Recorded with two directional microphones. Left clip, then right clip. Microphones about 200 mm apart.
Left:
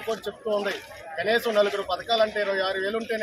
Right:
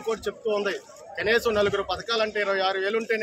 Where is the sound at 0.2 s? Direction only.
25° right (ahead or behind).